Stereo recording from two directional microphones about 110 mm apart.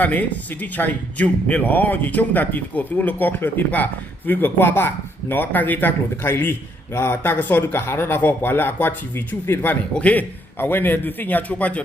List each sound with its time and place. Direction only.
0.0 s a man's voice: 15° left (ahead or behind)